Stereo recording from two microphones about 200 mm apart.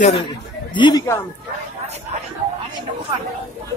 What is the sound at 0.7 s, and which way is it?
Speech, 20° left (ahead or behind).